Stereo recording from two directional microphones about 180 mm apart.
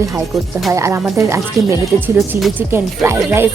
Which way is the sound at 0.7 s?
15° right (ahead or behind).